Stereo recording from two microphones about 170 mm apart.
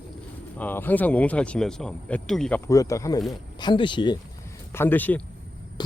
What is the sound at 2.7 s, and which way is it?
Speech, 20° left (ahead or behind).